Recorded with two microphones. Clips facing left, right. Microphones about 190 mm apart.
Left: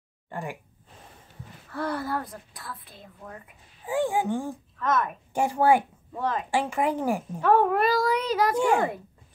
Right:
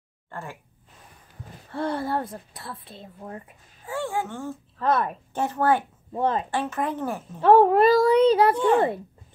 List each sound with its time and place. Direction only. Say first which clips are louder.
0.3 s speech: left 3 dB; 15° left (ahead or behind)
1.7 s a woman's voice: right 3 dB; 25° right (ahead or behind)
3.8 s speech: left 3 dB; 15° left (ahead or behind)
4.7 s speech: right 3 dB; 35° right (ahead or behind)
5.3 s speech: left 2 dB; 10° left (ahead or behind)
6.1 s a woman's voice: right 4 dB; 25° right (ahead or behind)
6.5 s speech: left 2 dB; 10° left (ahead or behind)
7.4 s a woman's voice: right 6 dB; 30° right (ahead or behind)